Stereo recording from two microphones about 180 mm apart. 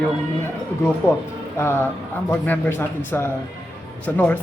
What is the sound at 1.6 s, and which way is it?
A man's voice, 10° left (ahead or behind).